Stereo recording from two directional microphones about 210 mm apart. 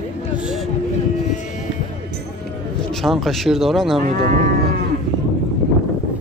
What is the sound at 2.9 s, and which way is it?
Speech, centre (ahead or behind).